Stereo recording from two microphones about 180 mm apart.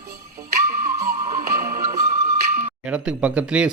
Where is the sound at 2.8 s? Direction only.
5° right (ahead or behind).